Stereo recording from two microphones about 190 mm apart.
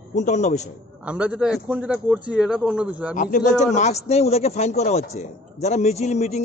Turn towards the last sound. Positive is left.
turn(degrees=35)  # may be behind; listen again after turning